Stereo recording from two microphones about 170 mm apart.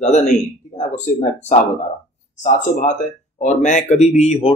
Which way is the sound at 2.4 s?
45° left (ahead or behind).